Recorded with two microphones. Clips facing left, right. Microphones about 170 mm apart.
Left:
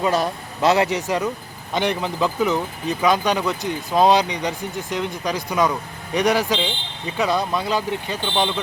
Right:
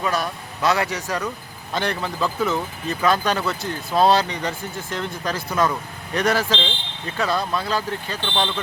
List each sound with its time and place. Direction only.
0.0 s speech: 25° left (ahead or behind)